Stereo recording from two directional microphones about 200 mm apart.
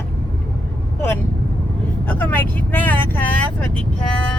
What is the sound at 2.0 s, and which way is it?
Speech, 10° left (ahead or behind).